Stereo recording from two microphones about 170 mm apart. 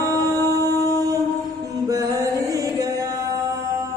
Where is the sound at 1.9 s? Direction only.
20° right (ahead or behind).